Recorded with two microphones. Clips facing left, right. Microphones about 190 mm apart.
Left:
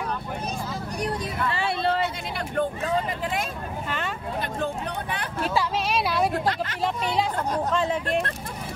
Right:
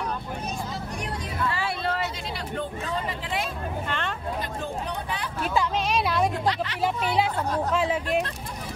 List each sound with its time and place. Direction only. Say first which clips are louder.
1.0 s vehicle: left 3 dB; 25° left (ahead or behind)
2.5 s a sound: left 6 dB; 50° left (ahead or behind)
4.6 s music: left 2 dB; 55° left (ahead or behind)
5.4 s a sound: even; 5° left (ahead or behind)
6.4 s speech: even; 45° left (ahead or behind)
6.8 s speech: right 1 dB; 5° right (ahead or behind)